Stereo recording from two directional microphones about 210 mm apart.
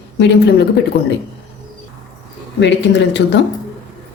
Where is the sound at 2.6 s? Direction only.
55° left (ahead or behind).